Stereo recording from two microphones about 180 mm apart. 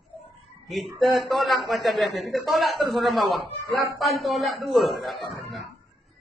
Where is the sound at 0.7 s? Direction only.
Centre (ahead or behind).